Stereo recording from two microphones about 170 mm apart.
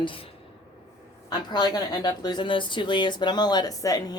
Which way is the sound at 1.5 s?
25° left (ahead or behind).